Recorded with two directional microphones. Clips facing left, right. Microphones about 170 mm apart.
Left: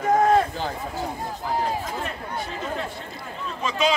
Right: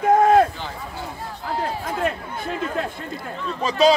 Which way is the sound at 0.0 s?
55° right (ahead or behind).